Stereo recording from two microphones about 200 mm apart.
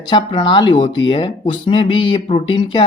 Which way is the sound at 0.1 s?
25° left (ahead or behind).